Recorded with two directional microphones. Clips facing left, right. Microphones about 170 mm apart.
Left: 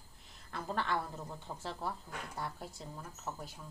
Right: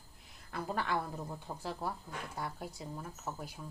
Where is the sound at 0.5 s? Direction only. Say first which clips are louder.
Right 1 dB; 5° right (ahead or behind).